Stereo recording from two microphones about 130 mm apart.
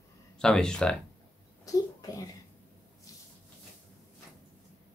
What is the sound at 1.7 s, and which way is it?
Speech, 25° left (ahead or behind).